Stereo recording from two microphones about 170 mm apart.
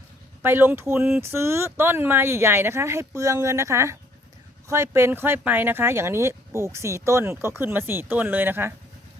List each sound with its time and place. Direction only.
0.4 s speech: 15° right (ahead or behind)